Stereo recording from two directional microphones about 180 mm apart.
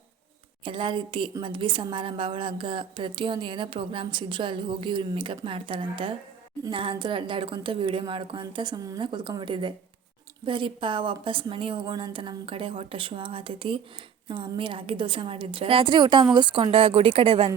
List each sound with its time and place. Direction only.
0.6 s a woman's voice: 25° right (ahead or behind)